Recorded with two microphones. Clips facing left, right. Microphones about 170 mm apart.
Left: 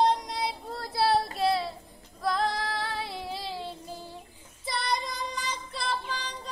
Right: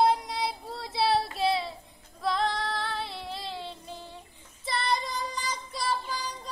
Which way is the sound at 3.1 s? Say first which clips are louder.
Left 2 dB; 5° left (ahead or behind).